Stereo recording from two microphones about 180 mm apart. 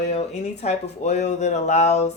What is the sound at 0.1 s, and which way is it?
Speech, 35° left (ahead or behind).